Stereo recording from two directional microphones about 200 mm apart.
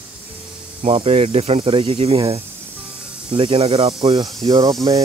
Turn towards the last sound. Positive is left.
turn(degrees=-20)  # may be behind; listen again after turning